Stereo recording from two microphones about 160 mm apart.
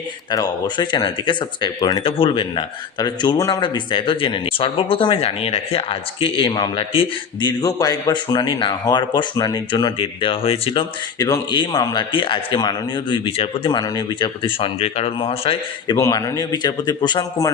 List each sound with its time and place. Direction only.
0.3 s speech: 25° left (ahead or behind)
7.6 s speech: 25° left (ahead or behind)
16.0 s speech: 20° left (ahead or behind)